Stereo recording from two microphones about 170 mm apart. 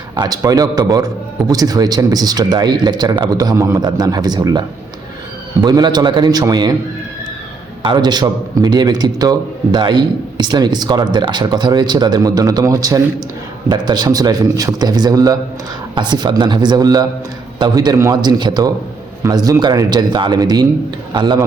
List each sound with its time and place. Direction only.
0.2 s a man's voice: 20° right (ahead or behind)
7.8 s a man's voice: 25° right (ahead or behind)